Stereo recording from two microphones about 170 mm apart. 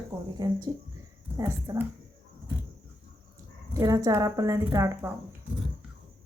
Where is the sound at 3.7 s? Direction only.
20° right (ahead or behind).